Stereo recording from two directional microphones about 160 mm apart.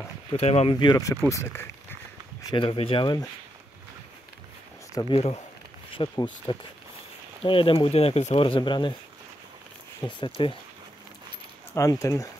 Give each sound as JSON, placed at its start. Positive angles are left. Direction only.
{"t": 0.4, "sound": "speech", "side_deg": 40}
{"t": 0.7, "sound": "speech", "side_deg": 25}
{"t": 2.5, "sound": "speech", "side_deg": 30}
{"t": 5.1, "sound": "speech", "side_deg": 40}
{"t": 10.0, "sound": "speech", "side_deg": 30}
{"t": 11.7, "sound": "speech", "side_deg": 20}